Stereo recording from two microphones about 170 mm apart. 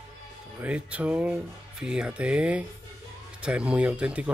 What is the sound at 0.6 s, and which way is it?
Speech, 10° right (ahead or behind).